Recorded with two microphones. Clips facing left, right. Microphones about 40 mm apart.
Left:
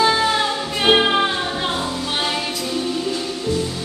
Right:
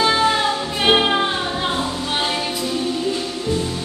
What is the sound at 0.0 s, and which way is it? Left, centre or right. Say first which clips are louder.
Music: even; centre.